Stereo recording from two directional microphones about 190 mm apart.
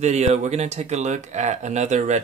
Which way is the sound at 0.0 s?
35° right (ahead or behind).